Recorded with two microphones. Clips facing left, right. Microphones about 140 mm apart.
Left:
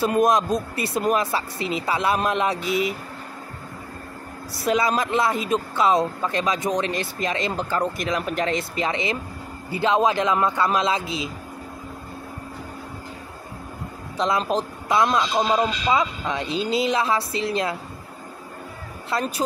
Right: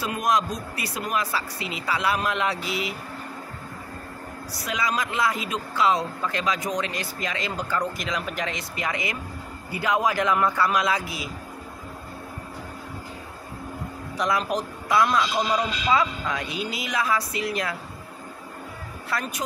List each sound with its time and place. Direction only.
0.2 s speech: 25° left (ahead or behind)
4.6 s speech: 30° left (ahead or behind)
14.1 s speech: 25° left (ahead or behind)
19.0 s speech: 25° left (ahead or behind)